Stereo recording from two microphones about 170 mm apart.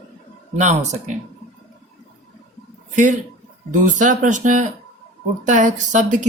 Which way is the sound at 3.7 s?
50° right (ahead or behind).